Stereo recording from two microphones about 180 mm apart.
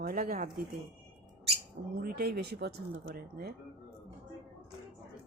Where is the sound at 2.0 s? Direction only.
60° right (ahead or behind).